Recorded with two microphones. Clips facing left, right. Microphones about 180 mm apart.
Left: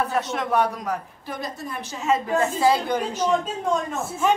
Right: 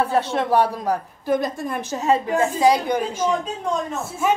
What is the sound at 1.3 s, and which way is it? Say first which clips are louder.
Speech: right 10 dB; 50° right (ahead or behind).